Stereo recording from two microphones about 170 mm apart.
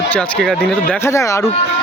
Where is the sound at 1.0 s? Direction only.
20° left (ahead or behind).